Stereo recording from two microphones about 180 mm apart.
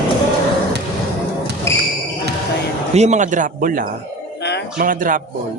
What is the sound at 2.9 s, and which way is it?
Speech, 40° right (ahead or behind).